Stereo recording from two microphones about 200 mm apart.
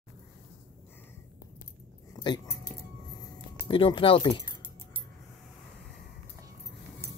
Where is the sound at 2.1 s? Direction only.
20° left (ahead or behind).